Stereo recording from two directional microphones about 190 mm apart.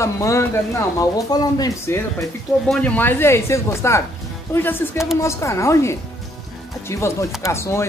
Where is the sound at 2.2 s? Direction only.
5° left (ahead or behind).